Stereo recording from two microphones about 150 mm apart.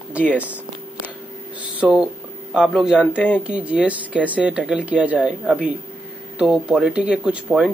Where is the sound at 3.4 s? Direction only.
5° right (ahead or behind).